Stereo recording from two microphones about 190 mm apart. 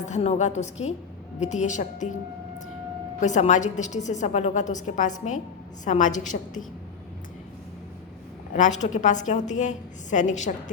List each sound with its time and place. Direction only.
0.0 s a woman's voice: 35° left (ahead or behind)
3.2 s a woman's voice: 40° left (ahead or behind)
8.5 s a woman's voice: 40° left (ahead or behind)